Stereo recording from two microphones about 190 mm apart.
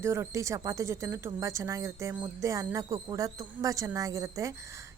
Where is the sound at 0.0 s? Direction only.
15° right (ahead or behind).